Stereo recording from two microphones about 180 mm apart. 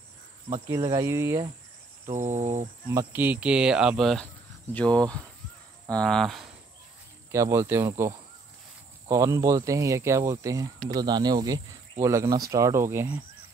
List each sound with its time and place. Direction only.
0.7 s speech: 20° right (ahead or behind)
2.1 s cricket: 45° right (ahead or behind)
2.9 s speech: 15° right (ahead or behind)
7.2 s speech: 15° right (ahead or behind)
9.1 s speech: 15° right (ahead or behind)